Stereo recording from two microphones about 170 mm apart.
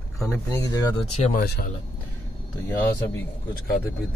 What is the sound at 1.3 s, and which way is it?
Speech, 65° left (ahead or behind).